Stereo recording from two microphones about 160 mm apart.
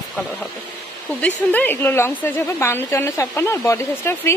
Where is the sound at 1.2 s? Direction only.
10° left (ahead or behind).